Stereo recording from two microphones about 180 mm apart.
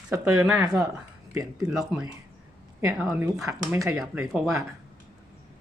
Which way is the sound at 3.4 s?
20° right (ahead or behind).